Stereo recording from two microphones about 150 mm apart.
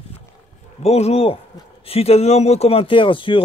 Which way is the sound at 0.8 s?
45° left (ahead or behind).